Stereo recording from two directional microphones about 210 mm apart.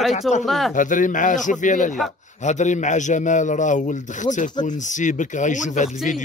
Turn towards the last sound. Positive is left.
turn(degrees=35)  # may be behind; listen again after turning